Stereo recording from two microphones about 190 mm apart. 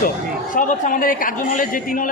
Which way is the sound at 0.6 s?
45° left (ahead or behind).